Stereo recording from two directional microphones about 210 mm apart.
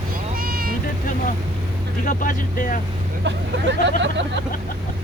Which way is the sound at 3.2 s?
55° right (ahead or behind).